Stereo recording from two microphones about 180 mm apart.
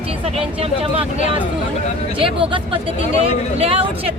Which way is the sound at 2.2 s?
30° right (ahead or behind).